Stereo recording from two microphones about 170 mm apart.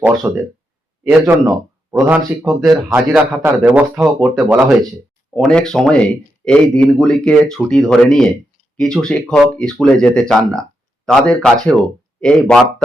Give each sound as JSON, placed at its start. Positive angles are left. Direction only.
{"t": 0.0, "sound": "speech", "side_deg": -20}
{"t": 5.3, "sound": "speech", "side_deg": 5}